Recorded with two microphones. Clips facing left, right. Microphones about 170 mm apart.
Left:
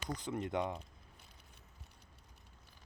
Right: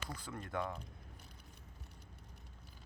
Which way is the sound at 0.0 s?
20° left (ahead or behind).